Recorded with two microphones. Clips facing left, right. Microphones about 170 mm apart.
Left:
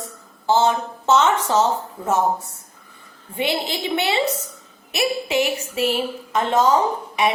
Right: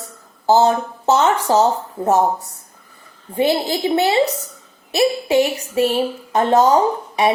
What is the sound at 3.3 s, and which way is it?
Speech, 35° right (ahead or behind).